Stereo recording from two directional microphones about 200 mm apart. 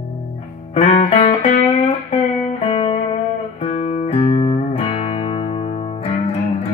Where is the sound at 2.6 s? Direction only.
30° left (ahead or behind).